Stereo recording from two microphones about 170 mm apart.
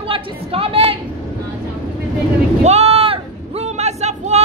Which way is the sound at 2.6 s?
40° right (ahead or behind).